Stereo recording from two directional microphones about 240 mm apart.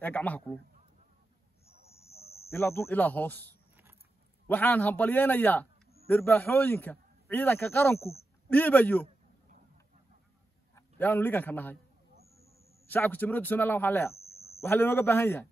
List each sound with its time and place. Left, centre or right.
0.0 s a man's voice: centre
2.5 s a man's voice: centre
4.5 s a man's voice: centre
10.7 s a man's voice: centre
12.8 s a man's voice: centre
14.1 s a sound: left
14.6 s a man's voice: centre